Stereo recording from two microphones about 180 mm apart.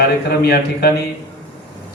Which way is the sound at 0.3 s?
60° left (ahead or behind).